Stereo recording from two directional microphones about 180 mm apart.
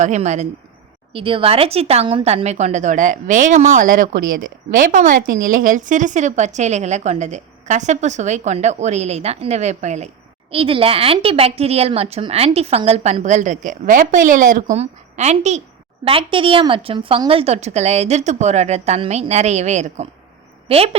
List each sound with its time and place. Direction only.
0.0 s a woman's voice: 40° right (ahead or behind)